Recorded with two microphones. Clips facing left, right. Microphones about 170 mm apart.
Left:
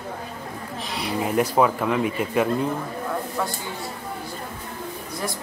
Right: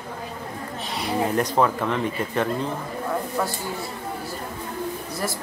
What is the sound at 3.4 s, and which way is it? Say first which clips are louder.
Speech: right 1 dB; 5° right (ahead or behind).